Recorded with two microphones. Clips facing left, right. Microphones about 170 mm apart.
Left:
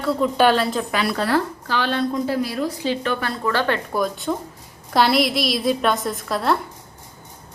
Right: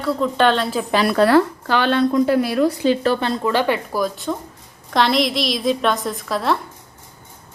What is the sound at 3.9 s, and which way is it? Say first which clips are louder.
A woman's voice: even; centre (ahead or behind).